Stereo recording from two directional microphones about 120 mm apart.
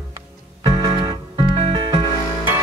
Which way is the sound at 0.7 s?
35° right (ahead or behind).